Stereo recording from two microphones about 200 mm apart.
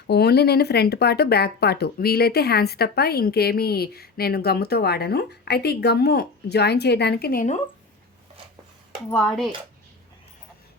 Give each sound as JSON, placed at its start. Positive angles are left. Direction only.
{"t": 0.1, "sound": "speech", "side_deg": 55}
{"t": 9.0, "sound": "speech", "side_deg": 5}